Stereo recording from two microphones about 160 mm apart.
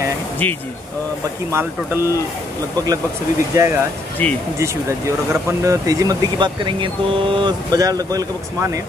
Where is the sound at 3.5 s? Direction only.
15° right (ahead or behind).